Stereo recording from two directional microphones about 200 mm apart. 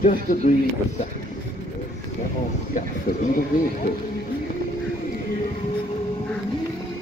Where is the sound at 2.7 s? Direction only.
40° left (ahead or behind).